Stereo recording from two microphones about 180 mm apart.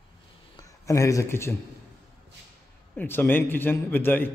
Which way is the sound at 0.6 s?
20° left (ahead or behind).